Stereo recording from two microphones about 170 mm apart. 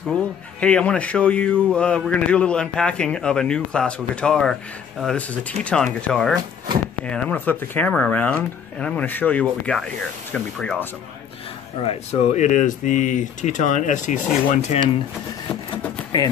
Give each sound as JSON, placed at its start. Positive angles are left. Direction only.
{"t": 0.6, "sound": "a man's voice", "side_deg": 5}
{"t": 11.8, "sound": "speech", "side_deg": 35}
{"t": 16.1, "sound": "speech", "side_deg": 25}